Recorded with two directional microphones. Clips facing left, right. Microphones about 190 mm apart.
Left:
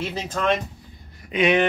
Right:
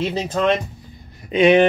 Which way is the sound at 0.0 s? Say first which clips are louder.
Right 5 dB; 20° right (ahead or behind).